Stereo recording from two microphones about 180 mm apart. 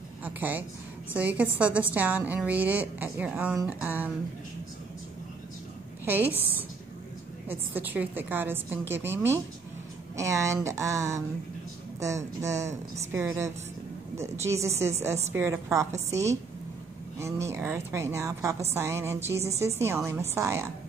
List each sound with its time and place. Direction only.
0.2 s a sound: 10° right (ahead or behind)
1.1 s a woman's voice: 10° right (ahead or behind)
6.0 s a woman's voice: 10° right (ahead or behind)
7.4 s a woman's voice: 10° right (ahead or behind)
12.4 s a woman's voice: 15° right (ahead or behind)